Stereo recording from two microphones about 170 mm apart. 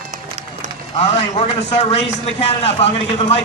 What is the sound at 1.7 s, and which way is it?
A man's voice, 40° left (ahead or behind).